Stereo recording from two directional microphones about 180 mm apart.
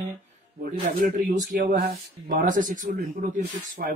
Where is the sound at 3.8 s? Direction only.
55° right (ahead or behind).